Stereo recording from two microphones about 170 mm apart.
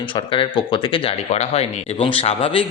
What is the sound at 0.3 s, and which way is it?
Speech, 30° left (ahead or behind).